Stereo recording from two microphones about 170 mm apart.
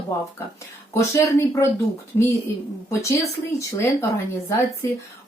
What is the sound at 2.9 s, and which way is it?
Speech, 15° left (ahead or behind).